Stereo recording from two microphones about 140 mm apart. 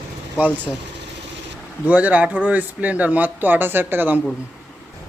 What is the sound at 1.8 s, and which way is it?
Speech, 10° right (ahead or behind).